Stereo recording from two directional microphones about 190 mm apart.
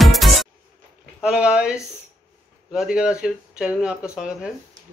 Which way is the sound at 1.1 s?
5° right (ahead or behind).